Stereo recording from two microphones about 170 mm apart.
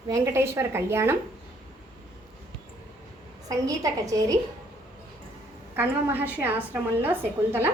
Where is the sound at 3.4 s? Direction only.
20° right (ahead or behind).